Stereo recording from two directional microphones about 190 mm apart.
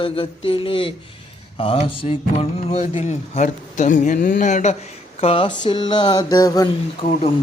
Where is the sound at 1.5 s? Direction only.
30° left (ahead or behind).